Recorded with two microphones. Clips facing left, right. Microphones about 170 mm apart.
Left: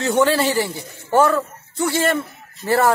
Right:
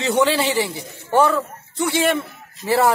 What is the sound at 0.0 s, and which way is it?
A man's voice, centre (ahead or behind).